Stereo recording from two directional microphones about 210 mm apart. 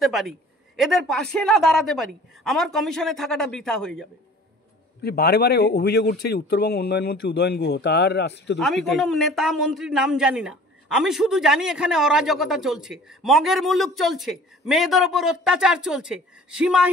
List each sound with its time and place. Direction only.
0.0 s a man's voice: centre (ahead or behind)
5.0 s a man's voice: 50° left (ahead or behind)
8.5 s a man's voice: centre (ahead or behind)